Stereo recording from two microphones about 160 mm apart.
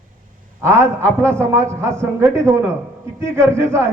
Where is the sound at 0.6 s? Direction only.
15° right (ahead or behind).